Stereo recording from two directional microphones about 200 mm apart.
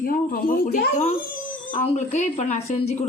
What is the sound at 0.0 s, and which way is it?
Speech, 45° left (ahead or behind).